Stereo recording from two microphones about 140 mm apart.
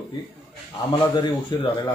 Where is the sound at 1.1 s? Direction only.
35° left (ahead or behind).